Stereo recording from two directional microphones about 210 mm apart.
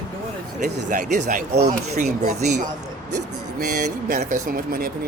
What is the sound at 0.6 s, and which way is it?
Speech, 35° right (ahead or behind).